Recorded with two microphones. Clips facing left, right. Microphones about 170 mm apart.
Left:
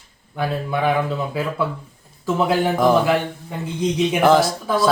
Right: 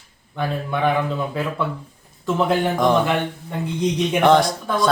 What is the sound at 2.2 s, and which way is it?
A man's voice, 5° left (ahead or behind).